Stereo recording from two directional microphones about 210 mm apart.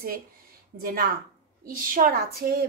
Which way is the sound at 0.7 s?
45° right (ahead or behind).